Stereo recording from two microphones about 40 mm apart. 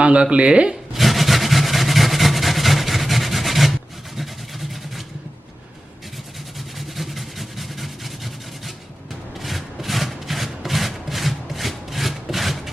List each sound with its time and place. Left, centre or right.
0.0 s speech: right
0.9 s vehicle: centre
6.7 s vehicle: centre
9.4 s wood: centre